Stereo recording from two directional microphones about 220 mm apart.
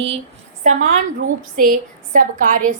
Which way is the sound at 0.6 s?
35° right (ahead or behind).